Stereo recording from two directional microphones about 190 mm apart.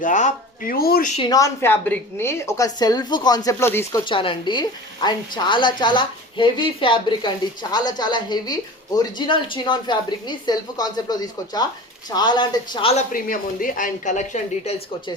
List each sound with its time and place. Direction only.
0.0 s speech: 40° left (ahead or behind)
1.3 s a woman's voice: 15° left (ahead or behind)
4.0 s a woman's voice: 25° left (ahead or behind)
13.1 s speech: 45° left (ahead or behind)